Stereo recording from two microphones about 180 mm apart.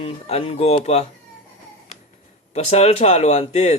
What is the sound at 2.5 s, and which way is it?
Speech, 35° left (ahead or behind).